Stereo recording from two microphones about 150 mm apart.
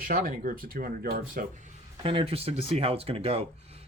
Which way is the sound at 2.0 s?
40° right (ahead or behind).